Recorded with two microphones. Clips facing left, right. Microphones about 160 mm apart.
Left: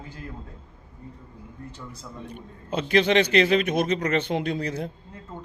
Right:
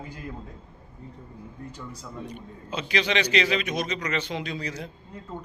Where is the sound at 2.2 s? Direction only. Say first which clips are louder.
Left 1 dB; 55° left (ahead or behind).